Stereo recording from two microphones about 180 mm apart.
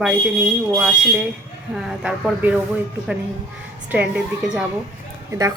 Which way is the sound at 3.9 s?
10° right (ahead or behind).